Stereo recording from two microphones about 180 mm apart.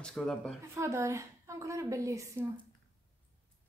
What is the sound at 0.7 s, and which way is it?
A woman's voice, 15° right (ahead or behind).